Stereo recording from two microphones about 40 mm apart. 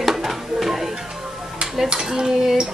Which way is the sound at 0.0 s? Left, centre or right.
Centre.